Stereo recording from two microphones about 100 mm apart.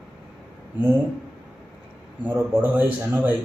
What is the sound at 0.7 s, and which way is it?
Speech, 20° right (ahead or behind).